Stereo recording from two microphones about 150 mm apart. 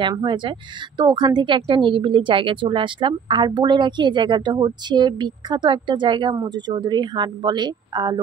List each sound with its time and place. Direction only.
0.1 s a woman's voice: 30° right (ahead or behind)